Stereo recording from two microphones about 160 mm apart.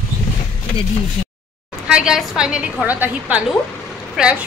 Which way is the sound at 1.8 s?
5° right (ahead or behind).